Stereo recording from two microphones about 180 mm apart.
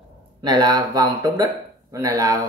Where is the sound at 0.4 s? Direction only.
20° right (ahead or behind).